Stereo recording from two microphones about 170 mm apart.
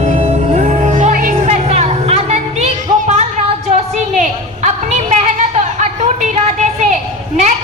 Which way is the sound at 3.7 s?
50° right (ahead or behind).